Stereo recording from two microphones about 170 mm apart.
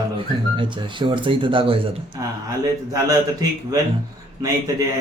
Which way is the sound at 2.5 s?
20° right (ahead or behind).